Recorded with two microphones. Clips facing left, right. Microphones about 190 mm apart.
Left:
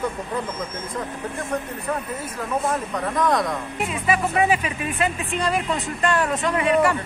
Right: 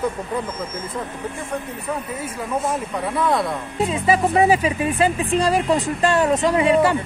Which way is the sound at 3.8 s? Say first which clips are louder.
Right 5 dB; 30° right (ahead or behind).